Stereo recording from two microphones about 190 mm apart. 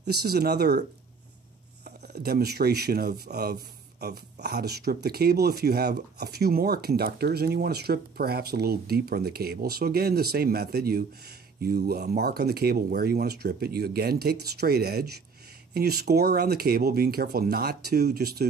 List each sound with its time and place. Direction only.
0.0 s speech: 55° right (ahead or behind)
1.9 s speech: 55° right (ahead or behind)